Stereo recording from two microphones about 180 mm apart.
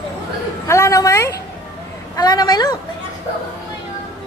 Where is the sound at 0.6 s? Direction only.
15° left (ahead or behind).